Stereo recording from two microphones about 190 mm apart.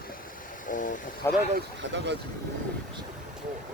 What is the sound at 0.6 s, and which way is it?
Vehicle, 45° left (ahead or behind).